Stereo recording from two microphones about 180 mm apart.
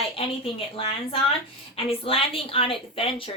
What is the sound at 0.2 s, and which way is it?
Speech, 30° left (ahead or behind).